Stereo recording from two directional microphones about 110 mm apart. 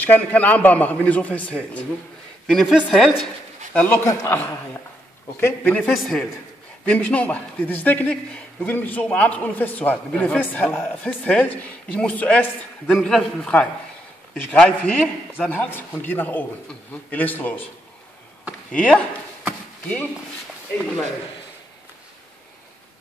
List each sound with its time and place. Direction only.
0.0 s a man's voice: 15° left (ahead or behind); by 3.2 s 5° right (ahead or behind)
3.7 s a man's voice: 15° left (ahead or behind)
4.0 s a man's voice: 25° left (ahead or behind)
5.4 s a man's voice: 15° left (ahead or behind)
5.9 s speech: centre (ahead or behind)
6.9 s a man's voice: 10° left (ahead or behind)
18.7 s speech: 10° left (ahead or behind)